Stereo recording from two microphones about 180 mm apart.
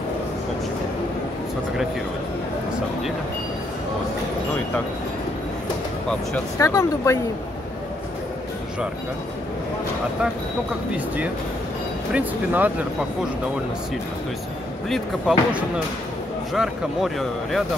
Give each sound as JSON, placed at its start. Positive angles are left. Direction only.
{"t": 6.0, "sound": "speech", "side_deg": 10}
{"t": 12.1, "sound": "speech", "side_deg": -10}
{"t": 14.9, "sound": "speech", "side_deg": 0}